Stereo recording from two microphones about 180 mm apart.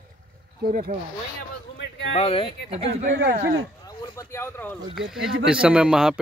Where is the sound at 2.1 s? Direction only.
30° left (ahead or behind).